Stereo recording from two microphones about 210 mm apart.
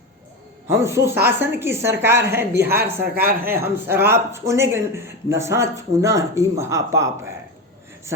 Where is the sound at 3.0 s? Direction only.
45° right (ahead or behind).